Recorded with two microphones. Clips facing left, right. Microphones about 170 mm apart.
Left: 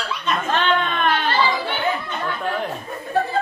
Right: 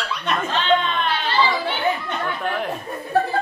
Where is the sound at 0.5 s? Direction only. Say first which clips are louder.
Right 2 dB; 55° left (ahead or behind).